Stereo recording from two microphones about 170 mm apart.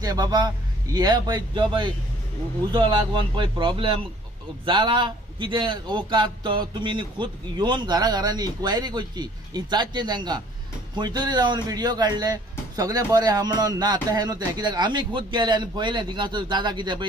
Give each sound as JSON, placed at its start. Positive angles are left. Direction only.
{"t": 0.0, "sound": "speech", "side_deg": -20}